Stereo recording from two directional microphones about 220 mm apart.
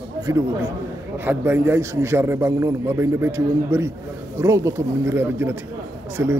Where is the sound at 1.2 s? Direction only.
10° right (ahead or behind).